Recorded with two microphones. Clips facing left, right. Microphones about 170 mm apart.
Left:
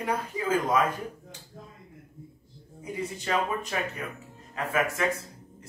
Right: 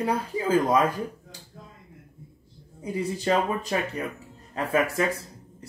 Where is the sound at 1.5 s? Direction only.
40° left (ahead or behind).